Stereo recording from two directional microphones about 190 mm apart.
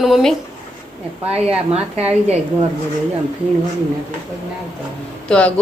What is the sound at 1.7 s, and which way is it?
Speech, 35° right (ahead or behind).